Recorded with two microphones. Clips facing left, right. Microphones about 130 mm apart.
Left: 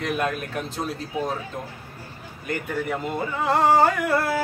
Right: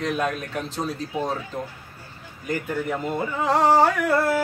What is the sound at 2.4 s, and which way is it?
A man's voice, centre (ahead or behind).